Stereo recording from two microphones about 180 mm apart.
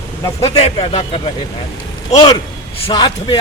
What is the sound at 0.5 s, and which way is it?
Speech, 30° left (ahead or behind).